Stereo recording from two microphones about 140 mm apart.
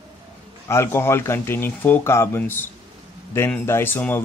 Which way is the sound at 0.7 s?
20° left (ahead or behind).